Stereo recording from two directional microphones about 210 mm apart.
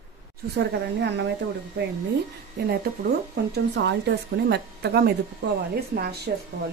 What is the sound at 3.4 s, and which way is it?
Speech, 50° right (ahead or behind).